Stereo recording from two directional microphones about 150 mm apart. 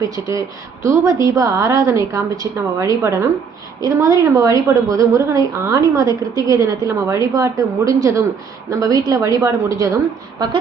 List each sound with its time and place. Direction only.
0.0 s a woman's voice: 20° right (ahead or behind)